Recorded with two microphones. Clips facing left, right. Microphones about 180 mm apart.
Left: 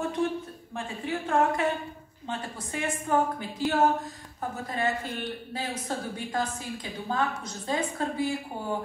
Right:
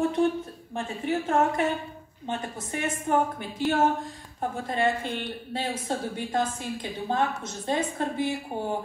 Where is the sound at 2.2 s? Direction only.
20° right (ahead or behind).